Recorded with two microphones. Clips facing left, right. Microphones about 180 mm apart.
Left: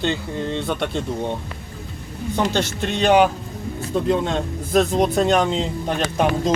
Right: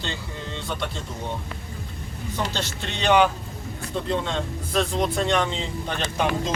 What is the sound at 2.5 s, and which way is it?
Speech, 50° left (ahead or behind).